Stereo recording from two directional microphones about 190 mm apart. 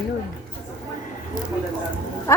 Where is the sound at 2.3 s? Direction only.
15° left (ahead or behind).